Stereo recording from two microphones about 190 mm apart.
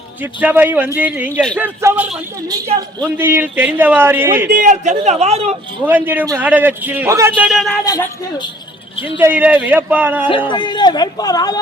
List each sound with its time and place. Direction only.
0.2 s a man's voice: 10° right (ahead or behind)
3.2 s a man's voice: 10° right (ahead or behind)
4.5 s a man's voice: 40° right (ahead or behind)
5.8 s a man's voice: 10° right (ahead or behind)
7.4 s speech: centre (ahead or behind)
7.9 s speech: 20° left (ahead or behind)
9.0 s a man's voice: 10° right (ahead or behind)
10.5 s speech: 25° left (ahead or behind)